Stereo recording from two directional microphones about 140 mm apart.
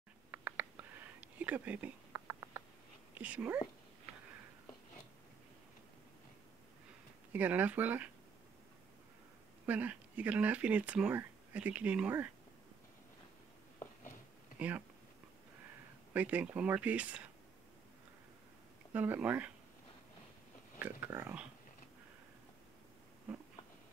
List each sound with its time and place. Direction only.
0.3 s a sound: 15° right (ahead or behind)
3.2 s speech: 10° right (ahead or behind)
7.3 s speech: 10° right (ahead or behind)
9.7 s speech: 10° right (ahead or behind)
14.6 s speech: 10° right (ahead or behind)
16.1 s speech: 10° right (ahead or behind)
18.9 s speech: 15° right (ahead or behind)
20.8 s speech: 15° right (ahead or behind)